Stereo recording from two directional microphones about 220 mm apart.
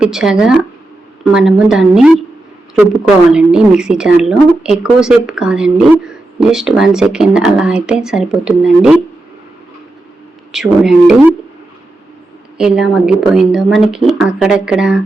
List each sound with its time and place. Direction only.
0.0 s speech: 5° right (ahead or behind)
3.3 s speech: 5° right (ahead or behind)
10.5 s speech: centre (ahead or behind)
12.5 s speech: 5° right (ahead or behind)